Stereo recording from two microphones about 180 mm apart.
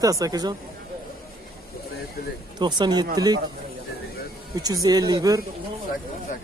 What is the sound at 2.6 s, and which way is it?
Speech, 25° right (ahead or behind).